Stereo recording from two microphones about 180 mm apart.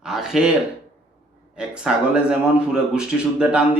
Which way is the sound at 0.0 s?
5° right (ahead or behind).